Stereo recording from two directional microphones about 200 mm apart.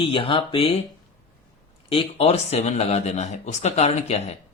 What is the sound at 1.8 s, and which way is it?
Speech, 30° left (ahead or behind).